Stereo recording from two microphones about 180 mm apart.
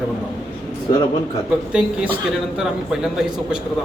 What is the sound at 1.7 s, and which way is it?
A man's voice, 5° right (ahead or behind).